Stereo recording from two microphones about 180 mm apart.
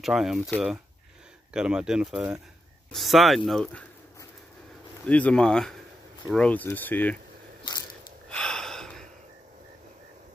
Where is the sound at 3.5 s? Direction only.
5° left (ahead or behind).